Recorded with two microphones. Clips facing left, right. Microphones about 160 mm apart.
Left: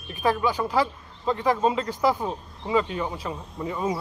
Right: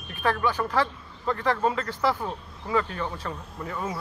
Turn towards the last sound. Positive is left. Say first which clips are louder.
# left 5 dB
turn(degrees=15)  # may be behind; listen again after turning